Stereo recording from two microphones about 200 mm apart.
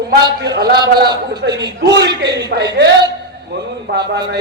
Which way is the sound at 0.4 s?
55° right (ahead or behind).